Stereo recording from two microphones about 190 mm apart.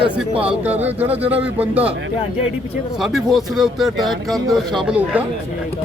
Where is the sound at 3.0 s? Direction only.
Centre (ahead or behind).